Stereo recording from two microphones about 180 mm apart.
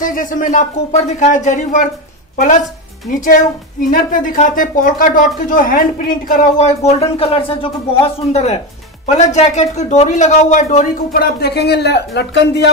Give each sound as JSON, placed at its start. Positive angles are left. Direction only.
{"t": 0.0, "sound": "speech", "side_deg": 50}
{"t": 11.1, "sound": "a man's voice", "side_deg": 60}